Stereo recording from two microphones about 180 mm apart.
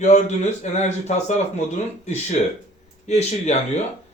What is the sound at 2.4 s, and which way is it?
Speech, 40° left (ahead or behind).